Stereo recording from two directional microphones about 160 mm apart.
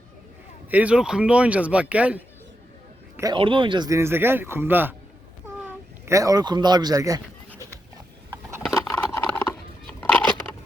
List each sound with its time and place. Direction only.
0.7 s speech: 10° right (ahead or behind)
3.3 s speech: 30° right (ahead or behind); by 4.9 s 10° right (ahead or behind)
6.1 s speech: 20° right (ahead or behind)
8.3 s a sound: 15° right (ahead or behind)
8.7 s patter: 20° left (ahead or behind)
10.0 s a sound: 5° left (ahead or behind)